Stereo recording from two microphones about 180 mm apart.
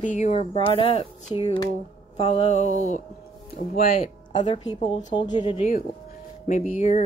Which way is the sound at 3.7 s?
50° left (ahead or behind).